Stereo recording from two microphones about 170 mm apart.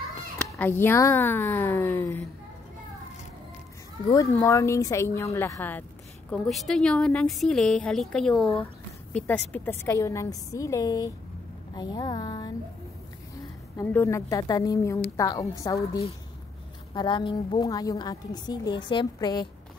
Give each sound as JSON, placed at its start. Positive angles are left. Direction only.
{"t": 0.5, "sound": "speech", "side_deg": 10}
{"t": 4.1, "sound": "a woman's voice", "side_deg": 15}
{"t": 13.7, "sound": "a woman's voice", "side_deg": 15}